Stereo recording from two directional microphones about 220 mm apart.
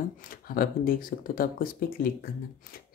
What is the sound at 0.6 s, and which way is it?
Speech, 40° left (ahead or behind).